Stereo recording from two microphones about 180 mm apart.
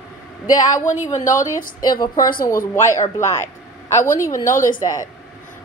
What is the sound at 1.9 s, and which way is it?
A woman's voice, 20° left (ahead or behind).